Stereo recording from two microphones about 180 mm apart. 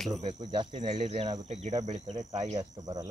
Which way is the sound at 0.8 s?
40° right (ahead or behind).